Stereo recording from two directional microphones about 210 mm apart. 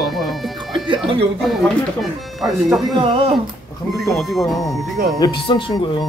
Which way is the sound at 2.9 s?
25° right (ahead or behind).